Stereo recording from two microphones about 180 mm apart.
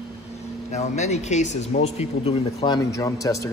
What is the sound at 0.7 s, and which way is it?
Speech, 40° left (ahead or behind).